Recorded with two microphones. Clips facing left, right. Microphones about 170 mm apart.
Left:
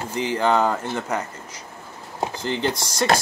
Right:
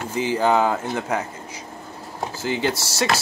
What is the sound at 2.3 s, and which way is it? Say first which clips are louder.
Speech: right 2 dB; 5° right (ahead or behind).